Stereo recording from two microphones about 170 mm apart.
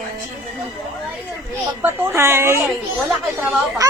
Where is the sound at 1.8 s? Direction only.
15° right (ahead or behind).